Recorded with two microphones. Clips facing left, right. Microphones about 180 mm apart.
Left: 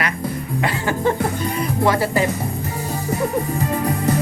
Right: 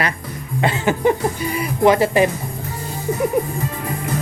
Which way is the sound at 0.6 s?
20° right (ahead or behind).